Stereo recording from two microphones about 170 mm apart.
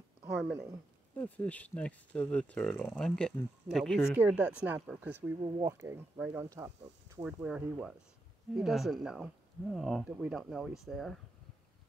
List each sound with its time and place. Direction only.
0.4 s speech: 5° right (ahead or behind)
1.1 s speech: 10° left (ahead or behind); by 5.3 s 10° right (ahead or behind)
5.4 s speech: 20° right (ahead or behind)
7.4 s speech: 5° right (ahead or behind)